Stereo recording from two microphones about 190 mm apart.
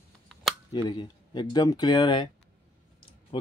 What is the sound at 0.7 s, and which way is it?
Speech, 20° left (ahead or behind).